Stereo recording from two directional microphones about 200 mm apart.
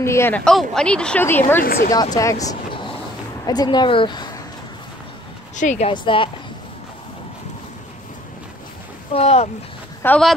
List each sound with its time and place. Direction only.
0.0 s speech: 10° left (ahead or behind)
1.6 s speech: 50° left (ahead or behind)
2.1 s speech: 15° left (ahead or behind)
5.6 s speech: 35° left (ahead or behind)
9.1 s speech: 30° left (ahead or behind)
10.0 s speech: 5° left (ahead or behind)